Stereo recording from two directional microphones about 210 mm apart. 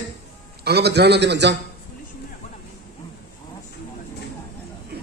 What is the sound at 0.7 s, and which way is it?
Speech, 50° right (ahead or behind).